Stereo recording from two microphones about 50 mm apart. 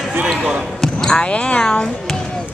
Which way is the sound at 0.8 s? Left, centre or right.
Centre.